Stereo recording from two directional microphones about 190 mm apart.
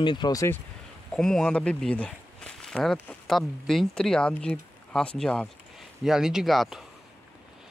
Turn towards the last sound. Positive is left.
turn(degrees=0)  # may be behind; listen again after turning